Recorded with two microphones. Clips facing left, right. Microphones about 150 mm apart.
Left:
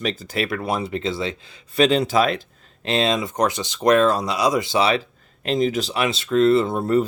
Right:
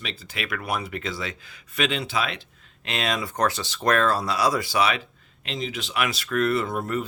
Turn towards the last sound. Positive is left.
turn(degrees=30)  # may be behind; listen again after turning